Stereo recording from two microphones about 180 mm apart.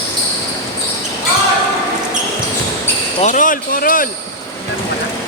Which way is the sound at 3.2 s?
45° left (ahead or behind).